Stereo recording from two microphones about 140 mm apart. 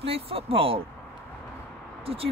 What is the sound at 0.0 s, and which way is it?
Speech, 45° right (ahead or behind).